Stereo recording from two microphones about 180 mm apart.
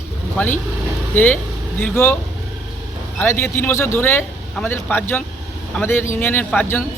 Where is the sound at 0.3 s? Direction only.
10° left (ahead or behind).